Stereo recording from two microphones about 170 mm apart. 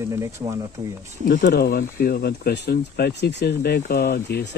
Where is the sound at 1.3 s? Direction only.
65° left (ahead or behind).